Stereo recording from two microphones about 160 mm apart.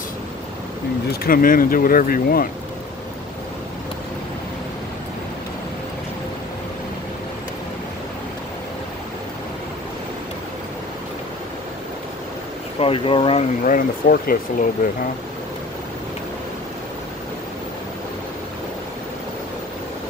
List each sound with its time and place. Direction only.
1.2 s speech: 60° left (ahead or behind)
12.7 s speech: 35° left (ahead or behind)
13.7 s speech: 60° left (ahead or behind)